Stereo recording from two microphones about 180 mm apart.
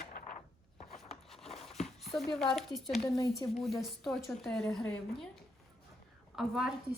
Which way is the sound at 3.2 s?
20° left (ahead or behind).